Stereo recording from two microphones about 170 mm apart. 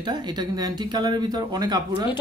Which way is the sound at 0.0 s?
25° right (ahead or behind).